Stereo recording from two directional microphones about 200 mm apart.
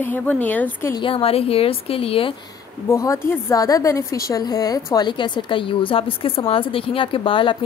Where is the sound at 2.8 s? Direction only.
15° left (ahead or behind).